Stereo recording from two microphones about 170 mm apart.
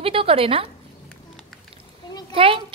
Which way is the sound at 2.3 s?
30° right (ahead or behind).